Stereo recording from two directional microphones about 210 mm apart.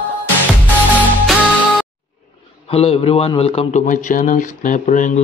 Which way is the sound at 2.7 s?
30° left (ahead or behind).